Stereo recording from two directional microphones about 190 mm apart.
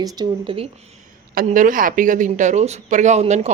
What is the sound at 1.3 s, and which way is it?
Speech, 45° right (ahead or behind).